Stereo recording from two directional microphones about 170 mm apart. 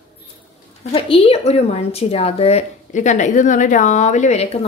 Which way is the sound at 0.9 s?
35° left (ahead or behind).